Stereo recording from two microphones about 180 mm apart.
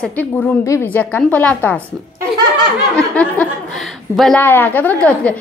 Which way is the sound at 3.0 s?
5° left (ahead or behind).